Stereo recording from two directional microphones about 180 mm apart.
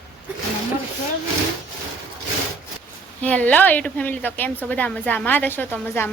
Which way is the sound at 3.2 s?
10° left (ahead or behind).